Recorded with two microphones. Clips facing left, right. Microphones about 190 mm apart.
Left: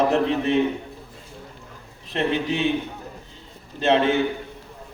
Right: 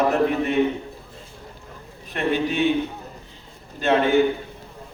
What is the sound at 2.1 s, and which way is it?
Speech, 20° left (ahead or behind).